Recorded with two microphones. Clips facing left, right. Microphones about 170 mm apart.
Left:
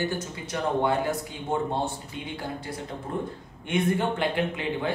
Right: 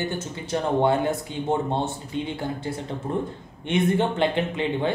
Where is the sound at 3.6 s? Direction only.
25° right (ahead or behind).